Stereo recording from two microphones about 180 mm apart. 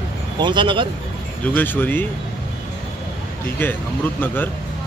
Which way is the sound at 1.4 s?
10° left (ahead or behind).